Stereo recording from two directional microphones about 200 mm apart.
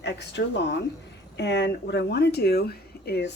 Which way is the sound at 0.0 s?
60° left (ahead or behind).